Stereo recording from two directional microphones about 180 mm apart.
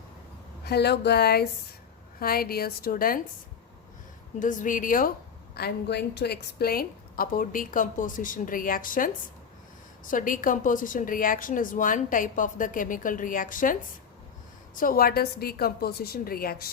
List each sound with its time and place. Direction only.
0.6 s a woman's voice: 65° left (ahead or behind)
4.4 s a woman's voice: 45° left (ahead or behind)
5.5 s a woman's voice: 65° left (ahead or behind); by 13.7 s 50° left (ahead or behind)
14.8 s a woman's voice: 55° left (ahead or behind)